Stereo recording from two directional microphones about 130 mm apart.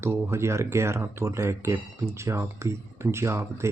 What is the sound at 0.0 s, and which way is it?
Speech, 20° right (ahead or behind).